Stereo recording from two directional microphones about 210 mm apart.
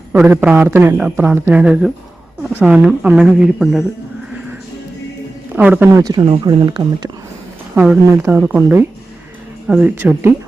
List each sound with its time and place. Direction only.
0.1 s a man's voice: 10° right (ahead or behind)
5.5 s speech: 10° right (ahead or behind)
7.8 s a man's voice: 10° right (ahead or behind)